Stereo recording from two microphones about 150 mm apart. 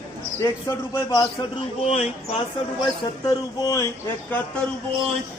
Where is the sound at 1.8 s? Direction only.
40° left (ahead or behind).